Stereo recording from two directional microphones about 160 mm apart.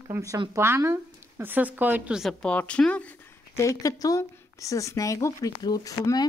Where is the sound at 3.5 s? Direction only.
20° left (ahead or behind).